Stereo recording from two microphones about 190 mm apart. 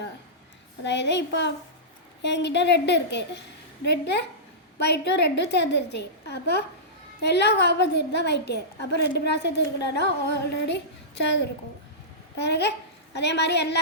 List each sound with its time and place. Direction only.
0.9 s a woman's voice: 65° left (ahead or behind)
12.4 s a woman's voice: 60° left (ahead or behind)